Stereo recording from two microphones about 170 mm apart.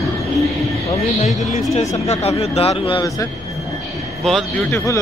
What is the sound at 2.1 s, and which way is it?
Speech, 40° left (ahead or behind).